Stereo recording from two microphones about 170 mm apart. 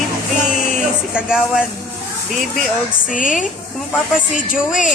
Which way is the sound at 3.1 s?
50° left (ahead or behind).